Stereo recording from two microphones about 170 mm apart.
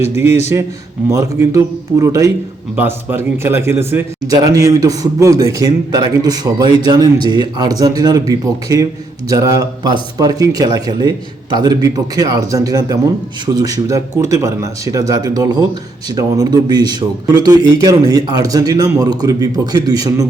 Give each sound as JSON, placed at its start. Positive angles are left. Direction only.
{"t": 0.1, "sound": "a man's voice", "side_deg": -15}